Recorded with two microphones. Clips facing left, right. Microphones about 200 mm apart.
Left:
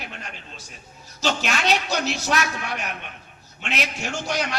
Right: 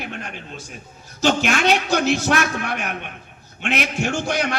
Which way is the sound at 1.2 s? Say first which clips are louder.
Right 6 dB; 50° right (ahead or behind).